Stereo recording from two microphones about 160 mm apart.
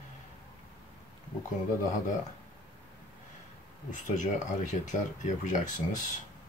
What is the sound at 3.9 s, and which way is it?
Speech, 50° left (ahead or behind).